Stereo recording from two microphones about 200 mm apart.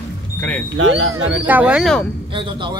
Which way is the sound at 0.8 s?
80° right.